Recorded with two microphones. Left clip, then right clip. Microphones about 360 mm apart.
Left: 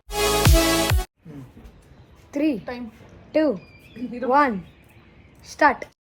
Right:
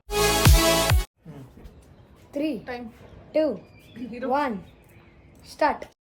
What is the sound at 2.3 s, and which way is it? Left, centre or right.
Speech, left.